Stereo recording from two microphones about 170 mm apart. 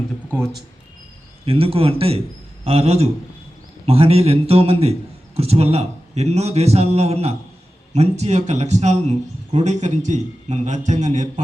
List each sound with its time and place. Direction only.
1.5 s a man's voice: 35° right (ahead or behind)